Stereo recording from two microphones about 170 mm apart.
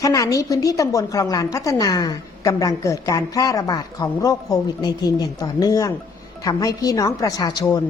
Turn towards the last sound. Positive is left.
turn(degrees=20)  # may be behind; listen again after turning